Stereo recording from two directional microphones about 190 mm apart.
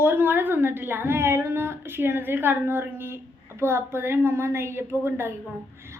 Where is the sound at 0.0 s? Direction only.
10° right (ahead or behind).